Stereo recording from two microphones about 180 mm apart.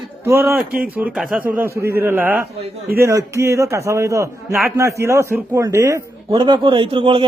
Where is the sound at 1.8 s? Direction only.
15° right (ahead or behind).